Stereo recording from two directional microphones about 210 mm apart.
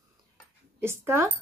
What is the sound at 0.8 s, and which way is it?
Speech, 10° right (ahead or behind).